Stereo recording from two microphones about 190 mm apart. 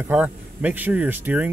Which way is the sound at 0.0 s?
10° right (ahead or behind).